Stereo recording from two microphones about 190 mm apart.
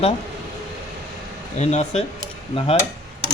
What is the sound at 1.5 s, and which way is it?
Speech, 35° left (ahead or behind).